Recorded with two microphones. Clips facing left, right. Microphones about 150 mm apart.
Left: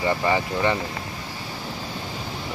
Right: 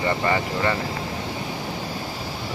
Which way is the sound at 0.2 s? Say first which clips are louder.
Left 1 dB; 15° left (ahead or behind).